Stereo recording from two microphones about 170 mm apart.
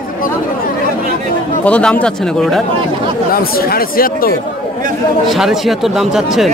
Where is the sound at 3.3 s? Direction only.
60° left (ahead or behind).